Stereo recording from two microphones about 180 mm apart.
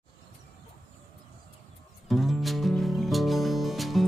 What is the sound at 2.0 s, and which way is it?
Music, centre (ahead or behind).